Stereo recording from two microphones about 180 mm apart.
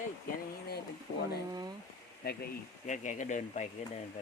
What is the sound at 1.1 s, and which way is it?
Speech, 45° left (ahead or behind).